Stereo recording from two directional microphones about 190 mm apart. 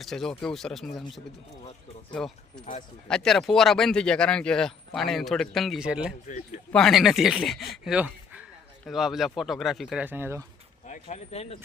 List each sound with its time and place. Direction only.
0.0 s speech: centre (ahead or behind)
10.8 s speech: 40° left (ahead or behind)